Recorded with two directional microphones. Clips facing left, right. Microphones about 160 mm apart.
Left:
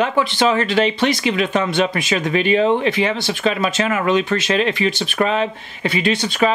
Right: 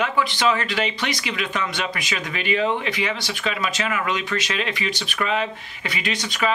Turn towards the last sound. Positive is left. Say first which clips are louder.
# left 7 dB
turn(degrees=30)  # may be behind; listen again after turning